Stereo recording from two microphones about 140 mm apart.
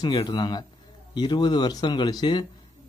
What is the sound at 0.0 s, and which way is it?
Speech, 30° left (ahead or behind).